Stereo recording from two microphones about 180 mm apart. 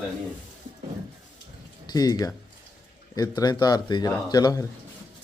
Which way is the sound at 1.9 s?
20° left (ahead or behind).